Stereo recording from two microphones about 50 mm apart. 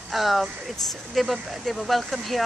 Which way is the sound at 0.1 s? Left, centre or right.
Centre.